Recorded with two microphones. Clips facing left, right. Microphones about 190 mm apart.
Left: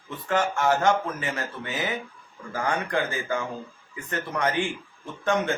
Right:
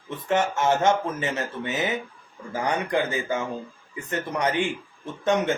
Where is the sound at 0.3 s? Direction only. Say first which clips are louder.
Right 1 dB; 20° right (ahead or behind).